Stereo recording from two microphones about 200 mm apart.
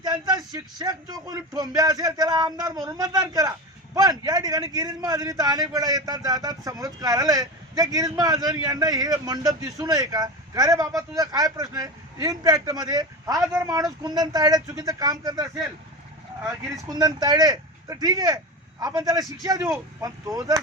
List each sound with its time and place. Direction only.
0.0 s a man's voice: 20° right (ahead or behind)
16.9 s a man's voice: 20° right (ahead or behind)